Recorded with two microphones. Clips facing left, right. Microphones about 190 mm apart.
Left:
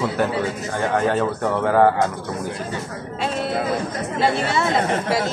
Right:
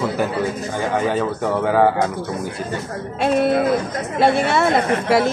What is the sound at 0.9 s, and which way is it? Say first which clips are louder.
A man's voice: even; centre (ahead or behind).